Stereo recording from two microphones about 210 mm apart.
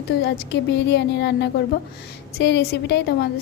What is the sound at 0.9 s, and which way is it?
A woman's voice, 55° left (ahead or behind).